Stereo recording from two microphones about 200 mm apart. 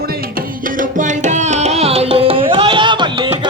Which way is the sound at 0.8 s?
40° right (ahead or behind).